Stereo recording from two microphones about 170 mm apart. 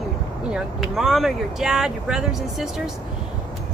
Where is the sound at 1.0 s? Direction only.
Centre (ahead or behind).